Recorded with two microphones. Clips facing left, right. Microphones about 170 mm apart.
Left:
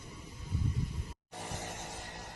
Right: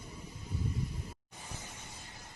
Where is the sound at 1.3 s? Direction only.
80° left.